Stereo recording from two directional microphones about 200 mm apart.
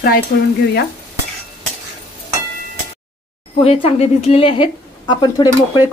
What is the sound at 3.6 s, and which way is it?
A woman's voice, 30° left (ahead or behind).